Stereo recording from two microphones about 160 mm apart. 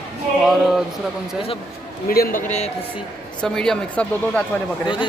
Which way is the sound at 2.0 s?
65° left (ahead or behind).